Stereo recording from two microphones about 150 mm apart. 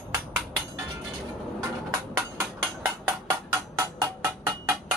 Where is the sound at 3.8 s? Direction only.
15° right (ahead or behind).